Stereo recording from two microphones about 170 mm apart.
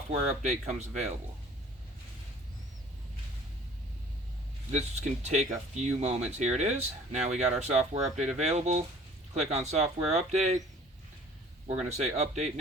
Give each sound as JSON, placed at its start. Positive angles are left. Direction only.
{"t": 0.1, "sound": "speech", "side_deg": -40}
{"t": 4.7, "sound": "speech", "side_deg": -40}
{"t": 11.7, "sound": "speech", "side_deg": -40}